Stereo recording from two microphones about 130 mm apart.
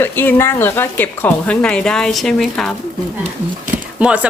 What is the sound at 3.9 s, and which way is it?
Speech, 10° right (ahead or behind).